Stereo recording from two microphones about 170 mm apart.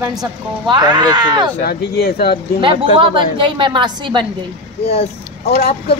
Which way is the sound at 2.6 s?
30° right (ahead or behind).